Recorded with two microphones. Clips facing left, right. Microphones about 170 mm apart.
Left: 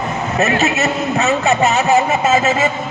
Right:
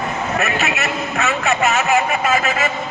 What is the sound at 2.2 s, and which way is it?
Speech, 25° left (ahead or behind).